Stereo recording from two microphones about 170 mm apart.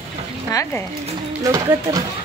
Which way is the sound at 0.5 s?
15° left (ahead or behind).